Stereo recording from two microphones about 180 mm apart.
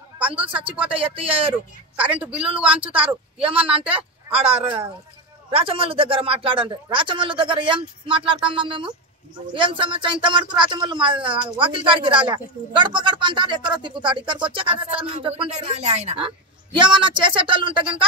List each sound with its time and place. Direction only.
0.8 s speech: 30° right (ahead or behind)
2.0 s a woman's voice: 5° right (ahead or behind)
3.1 s speech: 30° right (ahead or behind)